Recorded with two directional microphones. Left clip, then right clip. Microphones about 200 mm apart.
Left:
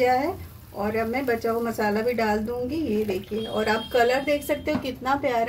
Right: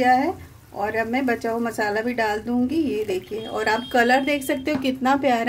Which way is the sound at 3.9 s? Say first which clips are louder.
Right 3 dB; 40° right (ahead or behind).